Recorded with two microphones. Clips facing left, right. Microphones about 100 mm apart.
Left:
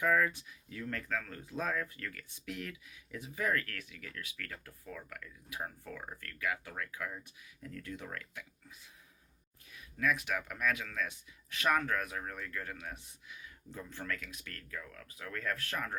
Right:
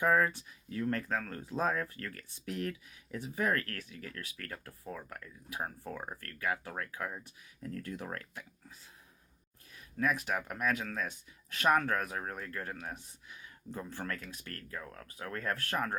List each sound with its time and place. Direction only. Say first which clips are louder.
0.0 s speech: right 2 dB; 35° right (ahead or behind)
9.7 s speech: right 1 dB; 35° right (ahead or behind)